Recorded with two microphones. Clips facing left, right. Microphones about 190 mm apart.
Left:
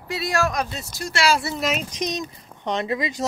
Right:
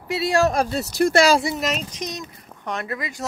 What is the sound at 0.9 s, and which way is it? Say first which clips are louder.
Speech: right 13 dB; 65° right (ahead or behind).